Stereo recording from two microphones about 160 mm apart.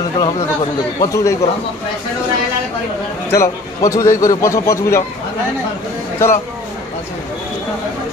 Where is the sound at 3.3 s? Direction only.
20° left (ahead or behind).